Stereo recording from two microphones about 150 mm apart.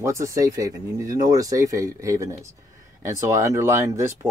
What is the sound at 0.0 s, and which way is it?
Speech, 20° right (ahead or behind).